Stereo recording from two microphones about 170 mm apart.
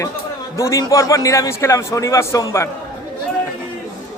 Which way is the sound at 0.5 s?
20° left (ahead or behind).